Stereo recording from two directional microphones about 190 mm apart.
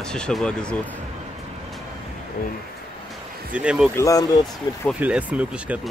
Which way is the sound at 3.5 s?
5° right (ahead or behind).